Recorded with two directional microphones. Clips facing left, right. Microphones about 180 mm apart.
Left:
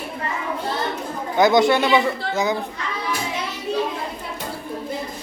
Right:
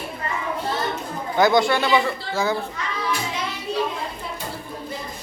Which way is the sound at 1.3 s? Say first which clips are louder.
Left 2 dB; 20° left (ahead or behind).